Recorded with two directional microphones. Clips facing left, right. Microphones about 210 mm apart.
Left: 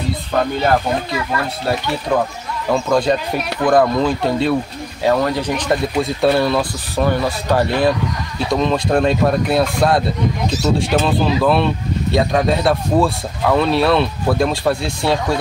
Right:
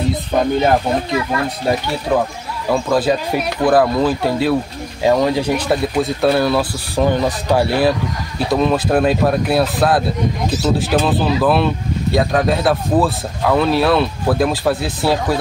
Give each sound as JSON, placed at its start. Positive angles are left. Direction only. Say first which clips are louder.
{"t": 0.1, "sound": "speech", "louder": "right 3 dB", "side_deg": -20}
{"t": 7.0, "sound": "speech", "louder": "right 2 dB", "side_deg": -15}